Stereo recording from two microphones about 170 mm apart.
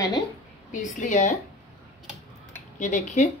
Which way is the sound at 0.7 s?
45° left (ahead or behind).